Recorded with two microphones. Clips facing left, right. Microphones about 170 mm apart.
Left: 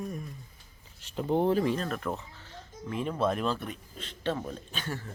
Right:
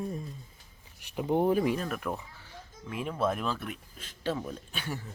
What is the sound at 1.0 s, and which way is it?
Speech, 15° right (ahead or behind).